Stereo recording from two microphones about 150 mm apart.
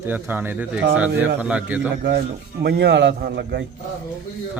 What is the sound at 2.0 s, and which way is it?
A man's voice, 90° right.